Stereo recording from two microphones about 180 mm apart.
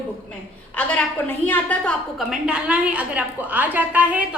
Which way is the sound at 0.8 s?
10° left (ahead or behind).